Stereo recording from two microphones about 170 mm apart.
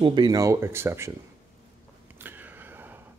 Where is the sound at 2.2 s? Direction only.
10° right (ahead or behind).